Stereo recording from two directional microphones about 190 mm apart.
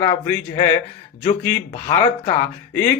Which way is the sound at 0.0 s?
20° left (ahead or behind).